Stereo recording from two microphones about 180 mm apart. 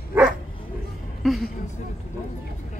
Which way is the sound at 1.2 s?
Centre (ahead or behind).